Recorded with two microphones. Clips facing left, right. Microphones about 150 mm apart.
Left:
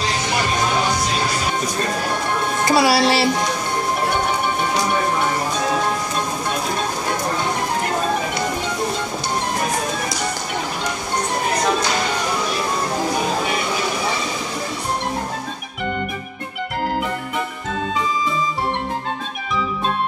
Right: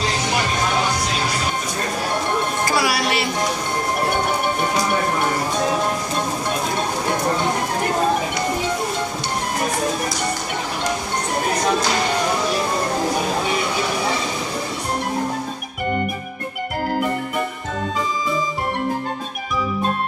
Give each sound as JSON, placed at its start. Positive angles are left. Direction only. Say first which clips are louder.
{"t": 2.6, "sound": "music", "louder": "left 9 dB", "side_deg": 25}